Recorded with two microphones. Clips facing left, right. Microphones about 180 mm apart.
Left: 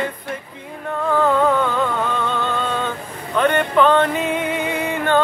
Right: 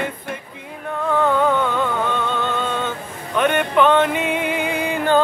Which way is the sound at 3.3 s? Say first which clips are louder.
Left 1 dB; 10° right (ahead or behind).